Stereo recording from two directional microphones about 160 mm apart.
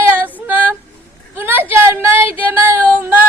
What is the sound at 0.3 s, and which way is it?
Female singing, 10° right (ahead or behind).